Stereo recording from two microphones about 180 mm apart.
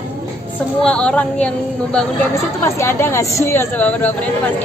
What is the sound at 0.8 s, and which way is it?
A woman's voice, 5° left (ahead or behind).